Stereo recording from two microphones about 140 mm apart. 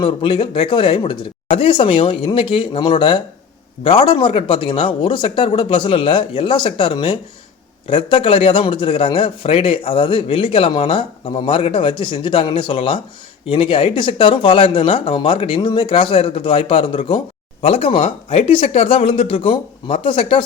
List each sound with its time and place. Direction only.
0.0 s a man's voice: 40° left (ahead or behind)